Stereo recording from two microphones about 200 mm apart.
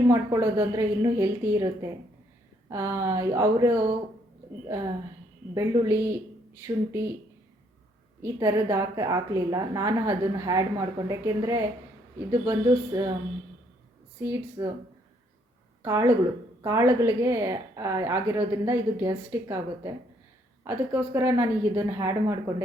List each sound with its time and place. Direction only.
0.1 s a woman's voice: 15° right (ahead or behind)
5.5 s a woman's voice: 15° right (ahead or behind)
8.2 s a woman's voice: 15° right (ahead or behind)
14.2 s a woman's voice: 15° right (ahead or behind)
15.8 s a woman's voice: 15° right (ahead or behind)